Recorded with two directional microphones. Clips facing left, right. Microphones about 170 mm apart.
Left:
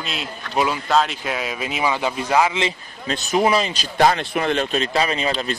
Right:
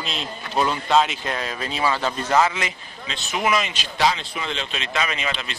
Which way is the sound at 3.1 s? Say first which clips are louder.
Left 5 dB; 35° left (ahead or behind).